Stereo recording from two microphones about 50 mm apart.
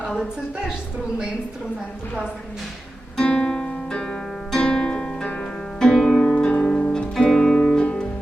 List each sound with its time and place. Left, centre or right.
3.2 s music: centre